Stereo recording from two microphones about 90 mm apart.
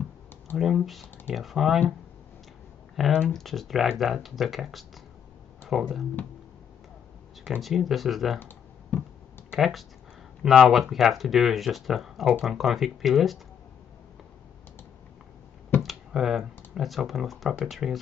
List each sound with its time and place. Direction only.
0.6 s speech: 5° right (ahead or behind)
3.0 s speech: 10° right (ahead or behind)
3.3 s speech: 5° left (ahead or behind)
7.6 s speech: centre (ahead or behind)
8.4 s computer keyboard: 20° left (ahead or behind)
9.5 s speech: centre (ahead or behind)
15.8 s speech: 5° right (ahead or behind)